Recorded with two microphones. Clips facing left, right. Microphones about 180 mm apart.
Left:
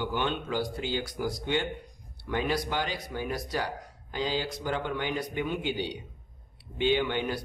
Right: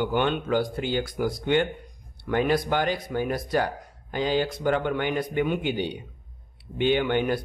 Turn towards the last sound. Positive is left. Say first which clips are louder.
# right 5 dB
turn(degrees=-55)  # may be behind; listen again after turning